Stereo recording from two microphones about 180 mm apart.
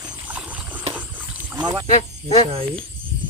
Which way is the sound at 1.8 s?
45° left (ahead or behind).